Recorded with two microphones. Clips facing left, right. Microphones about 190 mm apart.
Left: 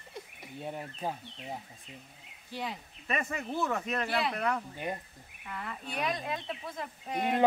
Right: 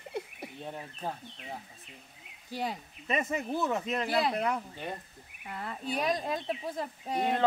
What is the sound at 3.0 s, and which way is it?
Speech, 20° right (ahead or behind).